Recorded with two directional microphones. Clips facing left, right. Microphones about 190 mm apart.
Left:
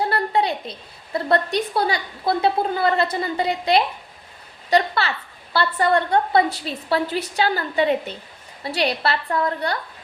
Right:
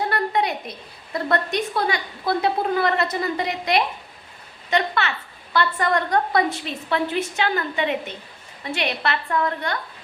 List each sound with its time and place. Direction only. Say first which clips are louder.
0.0 s a woman's voice: left 1 dB; 30° left (ahead or behind)